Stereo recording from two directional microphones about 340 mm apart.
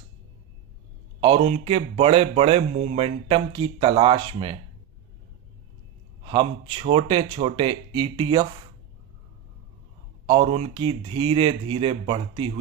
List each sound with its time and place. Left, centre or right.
1.2 s a man's voice: centre
6.2 s a man's voice: centre
10.2 s a man's voice: centre